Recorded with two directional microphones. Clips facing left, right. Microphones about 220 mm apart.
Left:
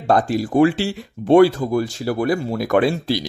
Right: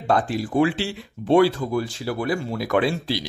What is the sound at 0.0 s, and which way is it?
Speech, 40° left (ahead or behind).